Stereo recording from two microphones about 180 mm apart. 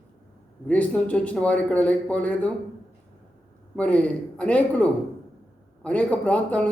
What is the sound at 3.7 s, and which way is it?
A man's voice, 5° left (ahead or behind).